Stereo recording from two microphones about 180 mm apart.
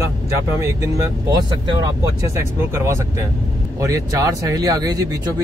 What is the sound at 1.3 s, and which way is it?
Speech, 20° right (ahead or behind).